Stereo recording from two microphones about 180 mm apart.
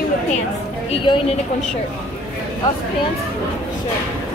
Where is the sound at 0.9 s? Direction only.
30° left (ahead or behind).